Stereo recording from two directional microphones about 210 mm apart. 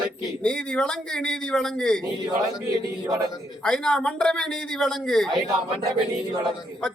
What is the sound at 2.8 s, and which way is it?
Speech, 15° right (ahead or behind).